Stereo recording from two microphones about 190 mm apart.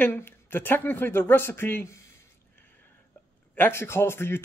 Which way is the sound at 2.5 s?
10° left (ahead or behind).